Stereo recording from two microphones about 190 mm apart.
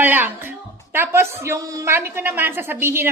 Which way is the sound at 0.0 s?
10° right (ahead or behind).